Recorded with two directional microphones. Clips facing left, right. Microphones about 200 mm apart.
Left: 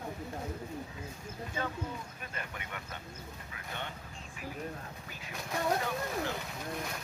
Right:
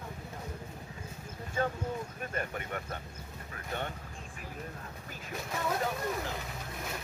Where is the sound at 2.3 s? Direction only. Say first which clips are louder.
Right 7 dB; 45° right (ahead or behind).